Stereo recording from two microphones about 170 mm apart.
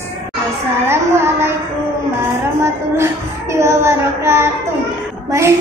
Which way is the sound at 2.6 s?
15° right (ahead or behind).